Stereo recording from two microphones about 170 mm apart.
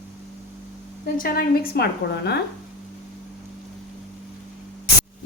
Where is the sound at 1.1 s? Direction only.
60° left (ahead or behind); by 2.4 s 75° left (ahead or behind).